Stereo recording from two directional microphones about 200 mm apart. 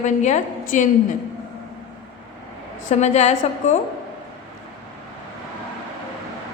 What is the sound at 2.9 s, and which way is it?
Speech, 35° left (ahead or behind).